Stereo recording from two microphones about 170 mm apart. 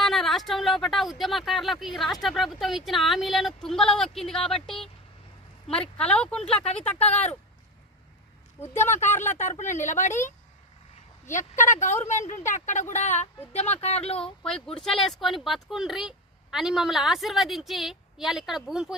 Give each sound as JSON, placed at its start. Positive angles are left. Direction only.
{"t": 0.0, "sound": "speech", "side_deg": 0}
{"t": 6.0, "sound": "speech", "side_deg": 5}
{"t": 8.7, "sound": "speech", "side_deg": 15}
{"t": 9.3, "sound": "a woman's voice", "side_deg": 45}
{"t": 14.2, "sound": "speech", "side_deg": 5}